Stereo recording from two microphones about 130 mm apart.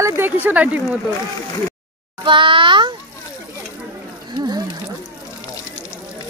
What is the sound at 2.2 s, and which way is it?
Speech, 40° right (ahead or behind).